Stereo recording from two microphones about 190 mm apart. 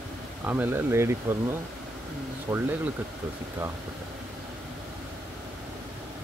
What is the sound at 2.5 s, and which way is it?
Speech, 10° right (ahead or behind).